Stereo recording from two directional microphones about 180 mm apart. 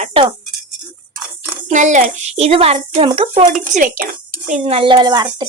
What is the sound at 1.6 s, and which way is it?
A child's voice, 40° right (ahead or behind).